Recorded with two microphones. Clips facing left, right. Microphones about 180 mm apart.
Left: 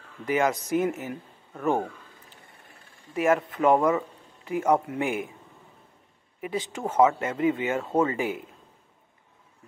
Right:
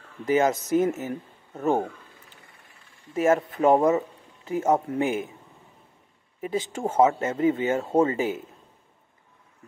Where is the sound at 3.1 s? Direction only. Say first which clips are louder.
Right 2 dB; 25° right (ahead or behind).